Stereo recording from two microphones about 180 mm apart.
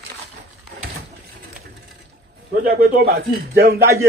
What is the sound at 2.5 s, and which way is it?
Speech, 55° right (ahead or behind).